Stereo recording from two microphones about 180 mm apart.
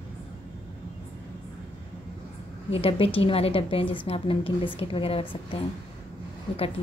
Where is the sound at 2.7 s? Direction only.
30° left (ahead or behind).